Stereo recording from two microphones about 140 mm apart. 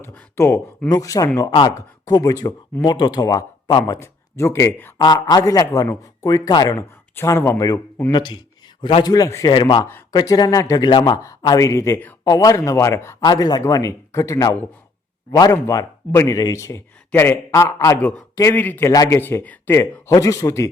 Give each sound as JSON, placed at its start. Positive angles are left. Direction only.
{"t": 0.0, "sound": "a man's voice", "side_deg": 15}
{"t": 3.9, "sound": "speech", "side_deg": 20}
{"t": 4.9, "sound": "a man's voice", "side_deg": 35}
{"t": 8.1, "sound": "a man's voice", "side_deg": 35}
{"t": 15.5, "sound": "a man's voice", "side_deg": 20}